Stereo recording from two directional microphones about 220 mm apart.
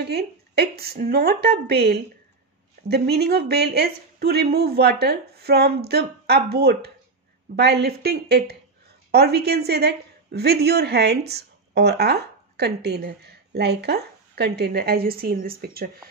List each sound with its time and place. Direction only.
0.1 s a woman's voice: 45° right (ahead or behind)